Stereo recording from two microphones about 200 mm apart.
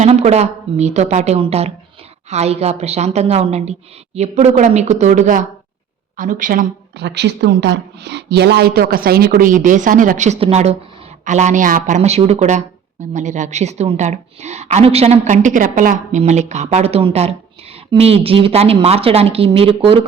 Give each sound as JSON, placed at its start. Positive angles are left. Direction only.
{"t": 0.0, "sound": "a woman's voice", "side_deg": -35}